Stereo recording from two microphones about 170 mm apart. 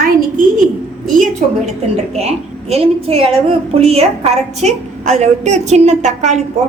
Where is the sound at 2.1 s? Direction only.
40° right (ahead or behind).